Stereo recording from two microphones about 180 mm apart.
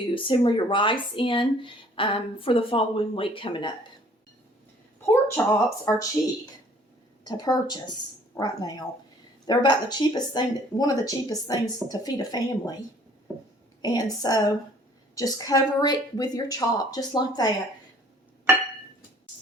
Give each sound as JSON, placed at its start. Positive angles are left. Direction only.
{"t": 0.1, "sound": "speech", "side_deg": 30}
{"t": 4.9, "sound": "speech", "side_deg": 15}
{"t": 13.8, "sound": "speech", "side_deg": 20}